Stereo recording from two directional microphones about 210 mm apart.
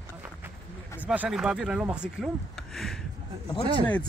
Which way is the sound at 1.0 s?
5° right (ahead or behind).